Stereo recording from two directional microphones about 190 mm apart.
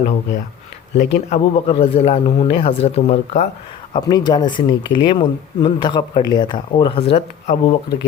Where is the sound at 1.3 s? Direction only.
30° left (ahead or behind).